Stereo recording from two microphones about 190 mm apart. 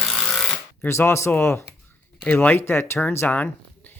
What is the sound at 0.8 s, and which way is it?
Speech, 15° left (ahead or behind).